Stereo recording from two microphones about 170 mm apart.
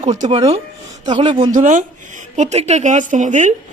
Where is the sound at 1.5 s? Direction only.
45° right (ahead or behind).